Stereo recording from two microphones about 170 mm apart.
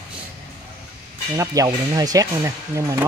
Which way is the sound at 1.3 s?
20° right (ahead or behind).